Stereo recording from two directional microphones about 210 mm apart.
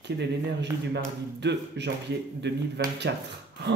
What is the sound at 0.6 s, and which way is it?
Speech, 55° right (ahead or behind).